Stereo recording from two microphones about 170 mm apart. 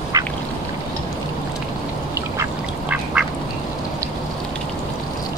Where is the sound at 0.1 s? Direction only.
20° right (ahead or behind).